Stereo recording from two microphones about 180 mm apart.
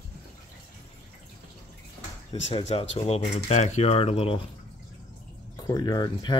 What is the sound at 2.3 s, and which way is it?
Speech, 35° left (ahead or behind).